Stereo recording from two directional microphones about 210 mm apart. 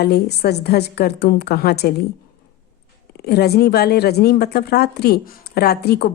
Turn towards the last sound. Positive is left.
turn(degrees=50)  # may be behind; listen again after turning